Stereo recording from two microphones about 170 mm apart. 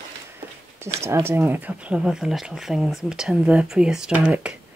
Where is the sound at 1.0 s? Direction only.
15° right (ahead or behind).